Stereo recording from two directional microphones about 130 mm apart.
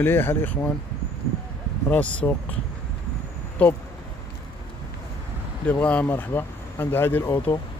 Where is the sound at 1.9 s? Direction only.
10° left (ahead or behind).